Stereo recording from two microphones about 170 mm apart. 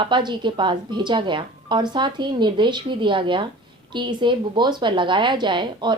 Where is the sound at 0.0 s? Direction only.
25° right (ahead or behind).